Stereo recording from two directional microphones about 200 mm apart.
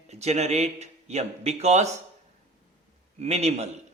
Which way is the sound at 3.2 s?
35° right (ahead or behind).